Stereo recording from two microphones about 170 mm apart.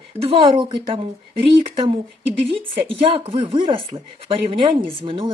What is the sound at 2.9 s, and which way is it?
Speech, 30° right (ahead or behind).